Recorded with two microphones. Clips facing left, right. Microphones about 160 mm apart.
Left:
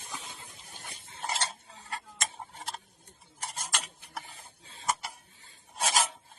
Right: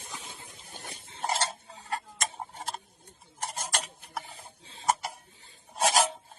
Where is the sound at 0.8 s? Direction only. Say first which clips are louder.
Right 4 dB; 45° right (ahead or behind).